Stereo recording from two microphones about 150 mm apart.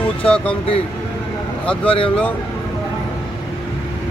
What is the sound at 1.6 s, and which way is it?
Speech, 10° left (ahead or behind).